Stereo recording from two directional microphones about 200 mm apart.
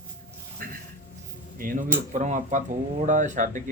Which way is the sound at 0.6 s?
45° right (ahead or behind).